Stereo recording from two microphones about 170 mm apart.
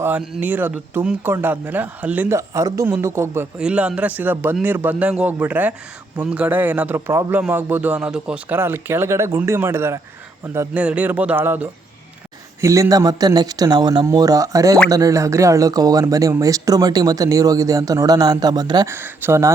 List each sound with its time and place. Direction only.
0.0 s a man's voice: 10° right (ahead or behind)
18.9 s a man's voice: 10° right (ahead or behind)